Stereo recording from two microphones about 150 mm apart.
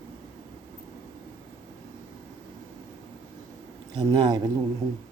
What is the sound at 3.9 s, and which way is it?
Speech, 30° right (ahead or behind).